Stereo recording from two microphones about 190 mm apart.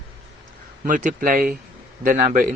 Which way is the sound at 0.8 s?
45° right (ahead or behind).